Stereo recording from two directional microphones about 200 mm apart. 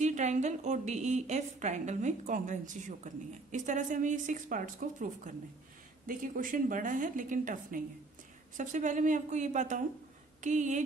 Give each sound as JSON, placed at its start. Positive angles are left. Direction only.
{"t": 0.0, "sound": "a woman's voice", "side_deg": -35}